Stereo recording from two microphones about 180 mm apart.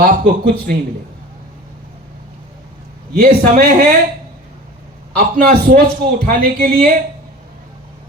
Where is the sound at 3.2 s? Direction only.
50° right (ahead or behind).